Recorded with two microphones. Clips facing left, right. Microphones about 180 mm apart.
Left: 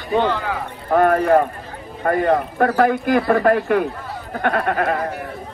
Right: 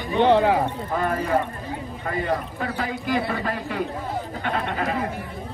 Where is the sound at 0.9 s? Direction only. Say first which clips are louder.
Left 15 dB; 60° left (ahead or behind).